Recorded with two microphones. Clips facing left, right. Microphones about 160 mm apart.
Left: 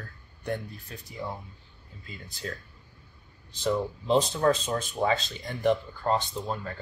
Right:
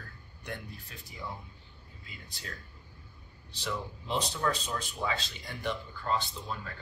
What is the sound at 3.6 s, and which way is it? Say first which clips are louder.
Speech: left 10 dB; 35° left (ahead or behind).